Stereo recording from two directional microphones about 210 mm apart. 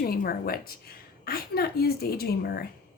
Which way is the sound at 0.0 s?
45° left (ahead or behind).